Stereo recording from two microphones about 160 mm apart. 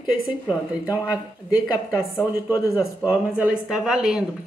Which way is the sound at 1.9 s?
15° left (ahead or behind).